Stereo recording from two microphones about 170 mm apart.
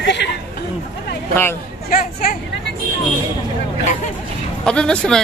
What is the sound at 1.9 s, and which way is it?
Speech, 60° left (ahead or behind).